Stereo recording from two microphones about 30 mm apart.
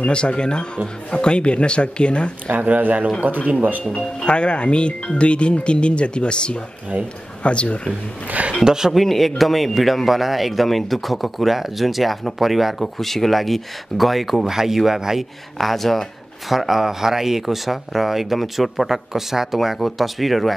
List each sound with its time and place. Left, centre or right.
0.0 s speech: left
2.8 s a man's voice: right
3.4 s speech: right
4.2 s speech: left
8.6 s speech: centre
9.0 s speech: centre
12.7 s speech: centre
14.5 s speech: centre
15.5 s speech: centre
16.5 s speech: centre